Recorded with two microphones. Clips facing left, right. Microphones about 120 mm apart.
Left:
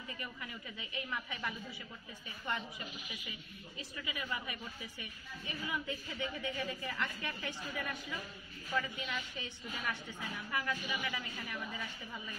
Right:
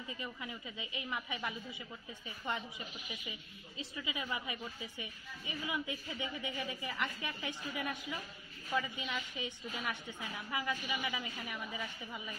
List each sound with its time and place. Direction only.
0.2 s a woman's voice: 20° right (ahead or behind)